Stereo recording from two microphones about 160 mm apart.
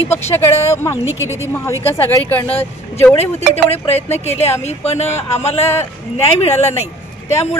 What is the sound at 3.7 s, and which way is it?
Speech, 40° left (ahead or behind).